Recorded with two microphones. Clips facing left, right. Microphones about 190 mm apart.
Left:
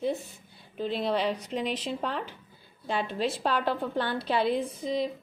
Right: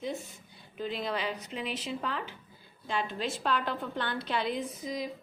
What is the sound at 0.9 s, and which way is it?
A woman's voice, 30° left (ahead or behind).